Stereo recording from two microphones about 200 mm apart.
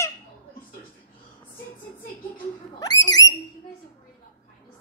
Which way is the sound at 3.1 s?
20° left (ahead or behind).